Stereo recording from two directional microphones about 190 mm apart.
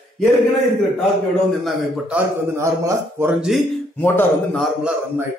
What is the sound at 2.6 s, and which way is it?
Speech, 15° right (ahead or behind).